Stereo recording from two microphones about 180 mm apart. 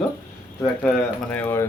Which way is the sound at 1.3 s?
10° left (ahead or behind).